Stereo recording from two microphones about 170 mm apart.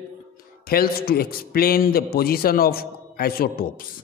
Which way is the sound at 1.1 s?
60° left (ahead or behind).